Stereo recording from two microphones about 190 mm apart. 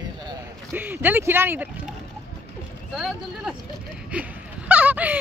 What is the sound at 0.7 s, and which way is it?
Speech, 10° right (ahead or behind).